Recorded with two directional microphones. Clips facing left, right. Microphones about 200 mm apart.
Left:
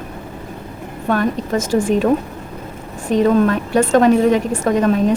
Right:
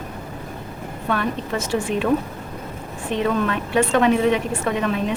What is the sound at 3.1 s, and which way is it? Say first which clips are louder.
A woman's voice: left 8 dB; 40° left (ahead or behind).